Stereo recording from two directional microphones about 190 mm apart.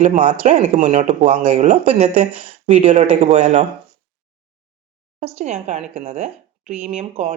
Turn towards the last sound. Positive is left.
turn(degrees=-35)  # may be behind; listen again after turning